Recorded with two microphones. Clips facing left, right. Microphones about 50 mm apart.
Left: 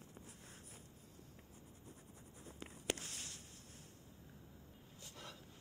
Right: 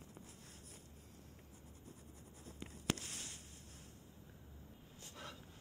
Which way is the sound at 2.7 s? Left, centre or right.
Left.